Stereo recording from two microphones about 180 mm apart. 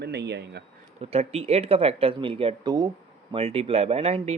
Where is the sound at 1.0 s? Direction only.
35° right (ahead or behind).